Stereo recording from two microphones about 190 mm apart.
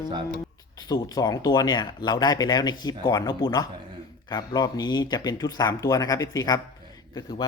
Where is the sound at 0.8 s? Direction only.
20° left (ahead or behind).